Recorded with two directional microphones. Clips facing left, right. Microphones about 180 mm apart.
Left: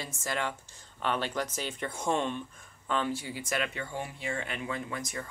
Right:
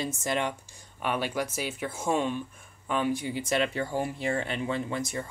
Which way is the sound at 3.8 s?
35° right (ahead or behind).